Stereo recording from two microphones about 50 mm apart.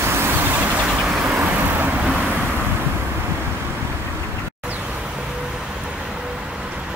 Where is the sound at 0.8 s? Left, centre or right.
Right.